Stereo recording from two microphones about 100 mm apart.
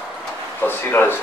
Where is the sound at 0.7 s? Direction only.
20° left (ahead or behind).